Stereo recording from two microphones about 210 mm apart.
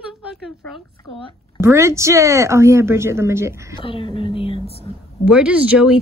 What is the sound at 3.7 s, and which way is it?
A woman's voice, 25° left (ahead or behind).